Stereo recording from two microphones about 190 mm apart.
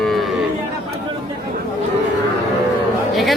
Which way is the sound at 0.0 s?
Centre (ahead or behind).